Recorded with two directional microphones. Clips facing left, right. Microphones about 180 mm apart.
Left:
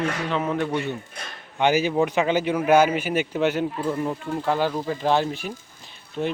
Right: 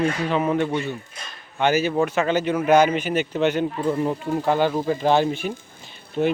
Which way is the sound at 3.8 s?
10° right (ahead or behind).